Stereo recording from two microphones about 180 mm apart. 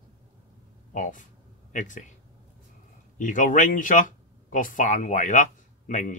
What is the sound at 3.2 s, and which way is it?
Speech, 45° left (ahead or behind).